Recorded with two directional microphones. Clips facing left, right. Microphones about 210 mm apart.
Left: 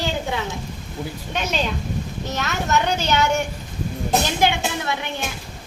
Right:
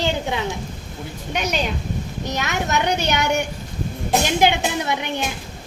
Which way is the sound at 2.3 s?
15° right (ahead or behind).